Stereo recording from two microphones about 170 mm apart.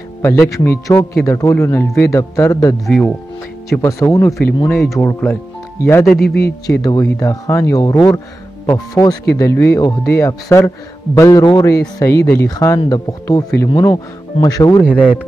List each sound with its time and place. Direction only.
0.2 s speech: 15° left (ahead or behind)
2.9 s speech: 5° left (ahead or behind)
3.7 s speech: 15° left (ahead or behind)
4.7 s speech: centre (ahead or behind)
5.0 s speech: 10° left (ahead or behind)
6.1 s a man's voice: 65° left (ahead or behind)
6.6 s speech: 20° left (ahead or behind)